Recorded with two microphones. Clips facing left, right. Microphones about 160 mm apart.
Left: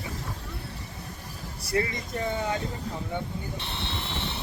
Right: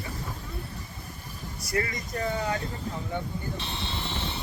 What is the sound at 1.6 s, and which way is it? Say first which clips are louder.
Speech: left 2 dB; 25° left (ahead or behind).